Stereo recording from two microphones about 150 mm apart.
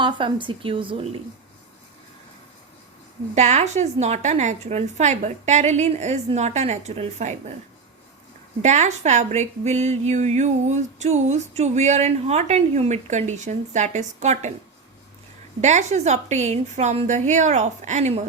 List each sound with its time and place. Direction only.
0.0 s a woman's voice: 30° right (ahead or behind)
3.3 s speech: 50° right (ahead or behind)
8.6 s speech: 50° right (ahead or behind)
15.6 s speech: 50° right (ahead or behind)